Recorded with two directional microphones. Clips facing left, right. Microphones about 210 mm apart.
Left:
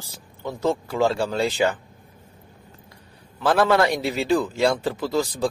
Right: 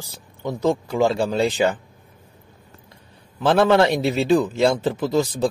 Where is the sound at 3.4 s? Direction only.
25° right (ahead or behind).